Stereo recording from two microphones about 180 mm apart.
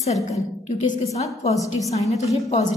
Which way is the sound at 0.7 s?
40° left (ahead or behind).